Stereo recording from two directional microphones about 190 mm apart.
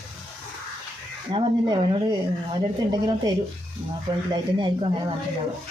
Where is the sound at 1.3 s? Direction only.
30° right (ahead or behind).